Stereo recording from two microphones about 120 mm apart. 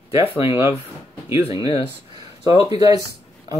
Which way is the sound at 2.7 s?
30° right (ahead or behind).